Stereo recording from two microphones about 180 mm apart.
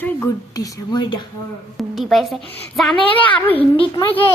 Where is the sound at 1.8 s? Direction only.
Centre (ahead or behind).